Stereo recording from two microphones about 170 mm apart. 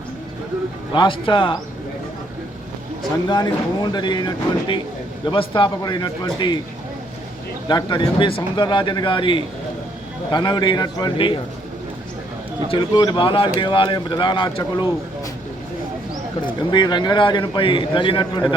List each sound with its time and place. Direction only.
0.9 s speech: 30° left (ahead or behind)
3.2 s speech: 25° left (ahead or behind)
7.7 s speech: 25° left (ahead or behind)
12.6 s speech: 25° left (ahead or behind)
16.6 s speech: 25° left (ahead or behind)